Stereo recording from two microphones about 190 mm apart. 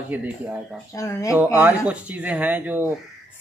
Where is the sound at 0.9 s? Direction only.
15° left (ahead or behind).